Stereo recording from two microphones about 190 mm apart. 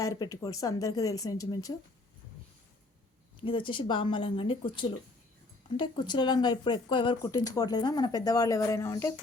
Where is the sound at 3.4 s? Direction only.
25° left (ahead or behind).